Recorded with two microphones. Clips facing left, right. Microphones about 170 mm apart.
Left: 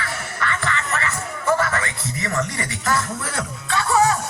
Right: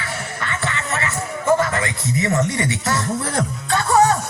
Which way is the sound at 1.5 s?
25° right (ahead or behind).